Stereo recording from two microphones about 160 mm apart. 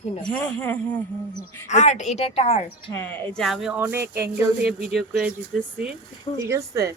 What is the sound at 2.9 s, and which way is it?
Speech, 15° left (ahead or behind).